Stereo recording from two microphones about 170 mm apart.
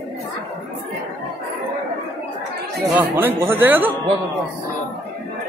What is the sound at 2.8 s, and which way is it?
Speech, 10° right (ahead or behind).